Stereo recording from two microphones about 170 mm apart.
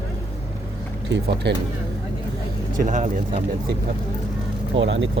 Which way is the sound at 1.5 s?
80° right.